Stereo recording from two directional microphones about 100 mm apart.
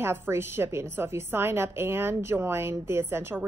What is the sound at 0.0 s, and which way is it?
A woman's voice, 25° right (ahead or behind).